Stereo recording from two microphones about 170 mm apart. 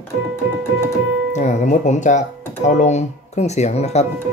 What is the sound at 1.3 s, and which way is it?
Speech, 45° left (ahead or behind).